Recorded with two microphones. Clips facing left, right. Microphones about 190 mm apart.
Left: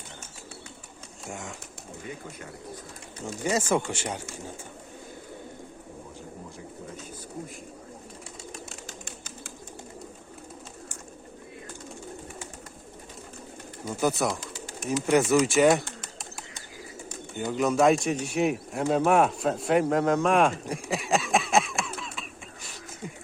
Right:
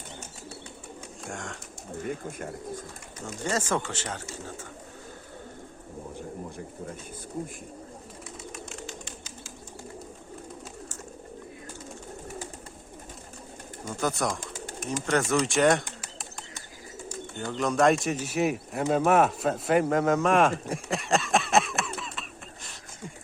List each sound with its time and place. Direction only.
1.2 s speech: 5° left (ahead or behind)
3.4 s speech: 10° left (ahead or behind)
8.5 s bird: 40° left (ahead or behind)
13.8 s speech: 5° left (ahead or behind)
14.4 s bird: 50° right (ahead or behind)
15.0 s speech: 5° left (ahead or behind)
17.4 s speech: 10° left (ahead or behind)
20.9 s a sound: centre (ahead or behind)